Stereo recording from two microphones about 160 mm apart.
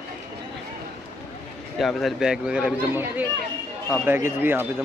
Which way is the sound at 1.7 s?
Centre (ahead or behind).